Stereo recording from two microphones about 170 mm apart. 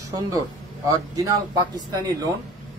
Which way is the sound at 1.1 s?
20° right (ahead or behind).